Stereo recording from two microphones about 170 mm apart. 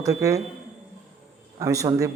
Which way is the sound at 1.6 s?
20° right (ahead or behind).